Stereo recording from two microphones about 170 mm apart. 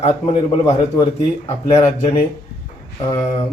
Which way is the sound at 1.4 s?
20° left (ahead or behind).